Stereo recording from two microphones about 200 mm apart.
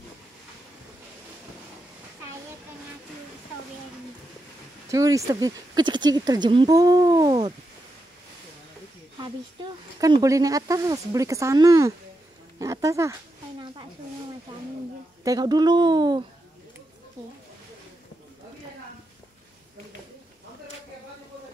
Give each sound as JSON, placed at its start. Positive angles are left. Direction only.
{"t": 4.8, "sound": "speech", "side_deg": -15}
{"t": 9.9, "sound": "speech", "side_deg": -15}
{"t": 15.2, "sound": "speech", "side_deg": -20}